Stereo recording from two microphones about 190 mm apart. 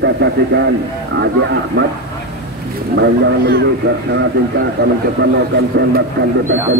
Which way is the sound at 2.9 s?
65° right (ahead or behind).